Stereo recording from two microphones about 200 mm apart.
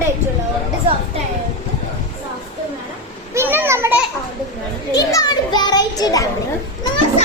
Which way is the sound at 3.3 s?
10° right (ahead or behind).